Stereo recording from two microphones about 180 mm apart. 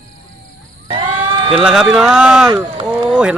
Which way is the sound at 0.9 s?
25° right (ahead or behind).